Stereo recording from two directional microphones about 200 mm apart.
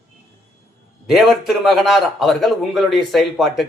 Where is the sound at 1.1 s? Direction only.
Centre (ahead or behind).